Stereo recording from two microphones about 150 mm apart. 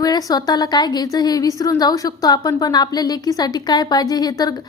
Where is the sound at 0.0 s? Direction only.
25° left (ahead or behind).